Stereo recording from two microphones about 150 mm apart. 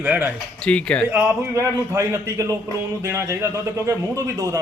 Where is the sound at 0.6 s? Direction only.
5° left (ahead or behind).